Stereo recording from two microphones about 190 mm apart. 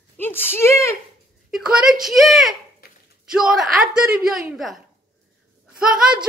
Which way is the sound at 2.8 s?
55° left (ahead or behind).